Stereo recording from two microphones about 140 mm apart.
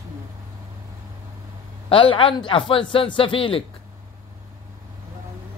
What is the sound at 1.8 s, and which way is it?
A man's voice, 40° left (ahead or behind).